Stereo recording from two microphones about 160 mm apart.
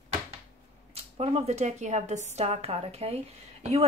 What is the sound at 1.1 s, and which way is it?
A woman's voice, 40° right (ahead or behind).